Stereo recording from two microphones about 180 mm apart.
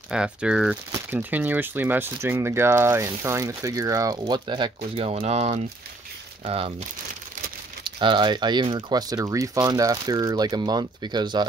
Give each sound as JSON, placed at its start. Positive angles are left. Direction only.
{"t": 0.1, "sound": "speech", "side_deg": -5}
{"t": 7.8, "sound": "speech", "side_deg": -25}